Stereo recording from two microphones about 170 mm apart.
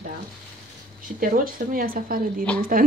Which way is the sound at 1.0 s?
55° right (ahead or behind).